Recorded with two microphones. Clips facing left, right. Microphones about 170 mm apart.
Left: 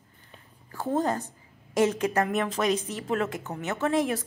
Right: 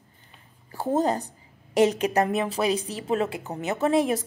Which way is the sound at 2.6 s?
35° right (ahead or behind).